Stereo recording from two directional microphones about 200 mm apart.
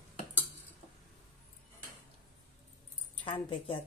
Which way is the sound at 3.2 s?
25° left (ahead or behind).